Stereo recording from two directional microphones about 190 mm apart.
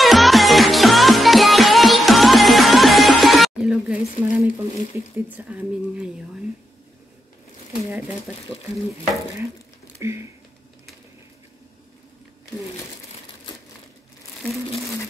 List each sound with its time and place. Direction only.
0.0 s music: centre (ahead or behind)
4.9 s speech: 10° right (ahead or behind)
8.3 s speech: 5° right (ahead or behind)
9.9 s speech: 15° right (ahead or behind)